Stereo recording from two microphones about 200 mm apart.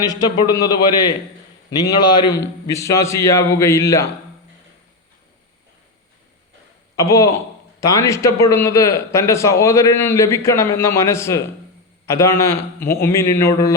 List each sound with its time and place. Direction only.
0.0 s a man's voice: 20° left (ahead or behind)
2.3 s a man's voice: 15° left (ahead or behind)
6.9 s a man's voice: 15° left (ahead or behind)